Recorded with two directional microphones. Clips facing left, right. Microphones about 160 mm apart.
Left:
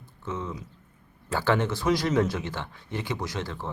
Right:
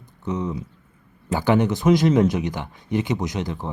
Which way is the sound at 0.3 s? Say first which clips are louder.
Right 7 dB; 20° right (ahead or behind).